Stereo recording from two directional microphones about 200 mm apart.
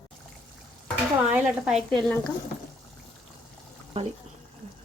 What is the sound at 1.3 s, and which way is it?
A woman's voice, 5° right (ahead or behind).